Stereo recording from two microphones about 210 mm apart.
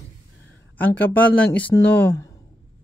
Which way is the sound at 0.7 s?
10° left (ahead or behind).